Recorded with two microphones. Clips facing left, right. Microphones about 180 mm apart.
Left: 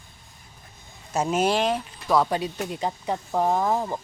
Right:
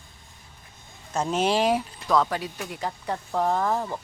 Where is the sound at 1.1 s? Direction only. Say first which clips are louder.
Left 1 dB; 5° left (ahead or behind).